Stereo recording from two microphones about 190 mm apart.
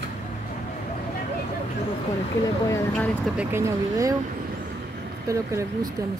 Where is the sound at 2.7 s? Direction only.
10° left (ahead or behind).